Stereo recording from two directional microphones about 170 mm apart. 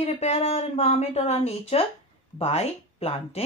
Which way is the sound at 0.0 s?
40° left (ahead or behind).